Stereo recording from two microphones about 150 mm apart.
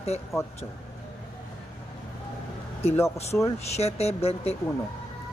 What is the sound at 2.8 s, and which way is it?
A woman's voice, 45° left (ahead or behind).